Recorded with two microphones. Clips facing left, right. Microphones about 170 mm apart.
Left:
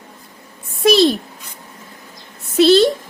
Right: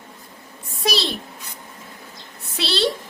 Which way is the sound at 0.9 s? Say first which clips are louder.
Left 12 dB; 50° left (ahead or behind).